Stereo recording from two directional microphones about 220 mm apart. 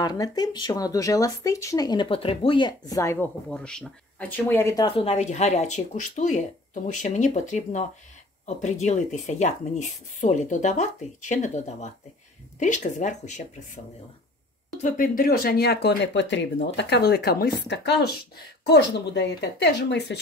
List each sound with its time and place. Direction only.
0.0 s speech: 15° left (ahead or behind); by 13.3 s 35° left (ahead or behind)
14.8 s speech: 35° left (ahead or behind)